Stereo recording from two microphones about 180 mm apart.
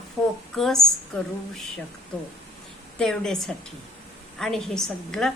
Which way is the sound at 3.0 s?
5° left (ahead or behind).